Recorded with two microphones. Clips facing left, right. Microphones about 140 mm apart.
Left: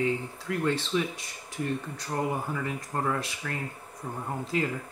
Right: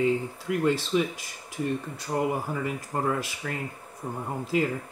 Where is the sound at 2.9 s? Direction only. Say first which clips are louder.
Right 2 dB; 5° right (ahead or behind).